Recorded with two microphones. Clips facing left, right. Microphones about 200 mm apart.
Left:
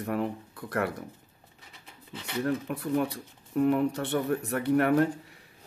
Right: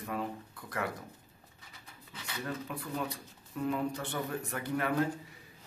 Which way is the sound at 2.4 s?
65° left (ahead or behind).